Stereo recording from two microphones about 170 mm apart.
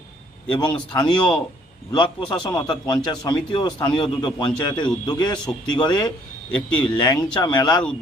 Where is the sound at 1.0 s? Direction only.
25° left (ahead or behind).